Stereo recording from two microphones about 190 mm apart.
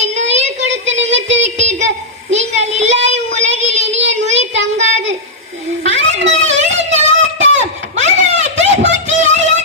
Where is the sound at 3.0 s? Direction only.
35° right (ahead or behind).